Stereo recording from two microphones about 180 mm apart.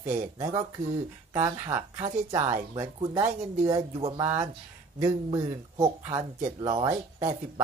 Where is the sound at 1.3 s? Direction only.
15° right (ahead or behind); by 7.3 s 30° right (ahead or behind).